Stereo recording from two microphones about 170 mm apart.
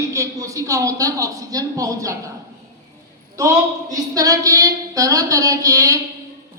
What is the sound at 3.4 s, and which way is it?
A man's voice, 20° right (ahead or behind).